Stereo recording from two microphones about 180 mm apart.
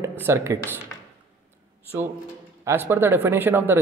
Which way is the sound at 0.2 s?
15° right (ahead or behind).